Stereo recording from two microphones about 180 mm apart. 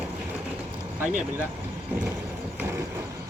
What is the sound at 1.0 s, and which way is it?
Speech, 10° right (ahead or behind).